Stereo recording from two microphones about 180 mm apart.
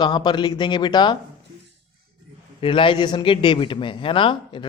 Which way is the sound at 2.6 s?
30° left (ahead or behind).